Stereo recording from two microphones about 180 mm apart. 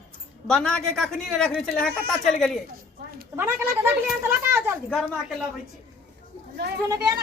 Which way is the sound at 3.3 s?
10° right (ahead or behind).